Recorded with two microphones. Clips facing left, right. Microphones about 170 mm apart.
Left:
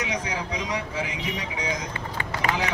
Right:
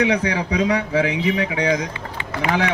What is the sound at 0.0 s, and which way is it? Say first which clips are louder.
Speech: right 10 dB; 65° right (ahead or behind).